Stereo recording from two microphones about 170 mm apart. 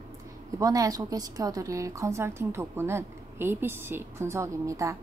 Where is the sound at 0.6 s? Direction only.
20° right (ahead or behind).